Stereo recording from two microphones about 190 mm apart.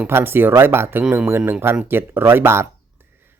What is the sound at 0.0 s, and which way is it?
Speech, 10° right (ahead or behind).